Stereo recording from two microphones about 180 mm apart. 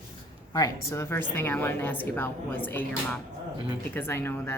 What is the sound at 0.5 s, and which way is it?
A woman's voice, 20° left (ahead or behind).